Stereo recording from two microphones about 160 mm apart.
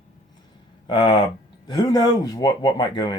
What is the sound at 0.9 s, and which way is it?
Speech, 30° left (ahead or behind).